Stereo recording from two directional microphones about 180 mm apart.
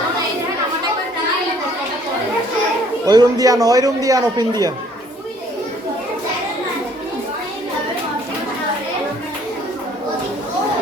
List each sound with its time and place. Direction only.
3.1 s a man's voice: 20° right (ahead or behind)